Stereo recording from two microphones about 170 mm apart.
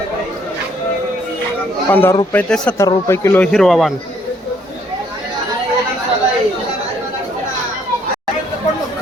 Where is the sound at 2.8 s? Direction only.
15° left (ahead or behind).